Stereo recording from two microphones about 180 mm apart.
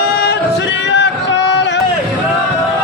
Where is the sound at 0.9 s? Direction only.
80° left.